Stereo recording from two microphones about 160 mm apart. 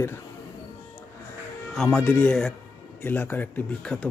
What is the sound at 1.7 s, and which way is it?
A man's voice, centre (ahead or behind).